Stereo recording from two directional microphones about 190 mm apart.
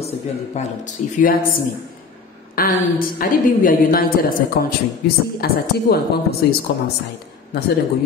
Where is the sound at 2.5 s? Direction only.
50° left (ahead or behind).